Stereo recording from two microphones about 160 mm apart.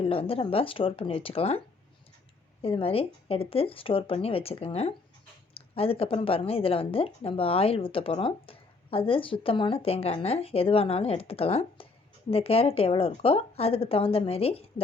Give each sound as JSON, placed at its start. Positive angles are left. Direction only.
{"t": 0.0, "sound": "speech", "side_deg": 35}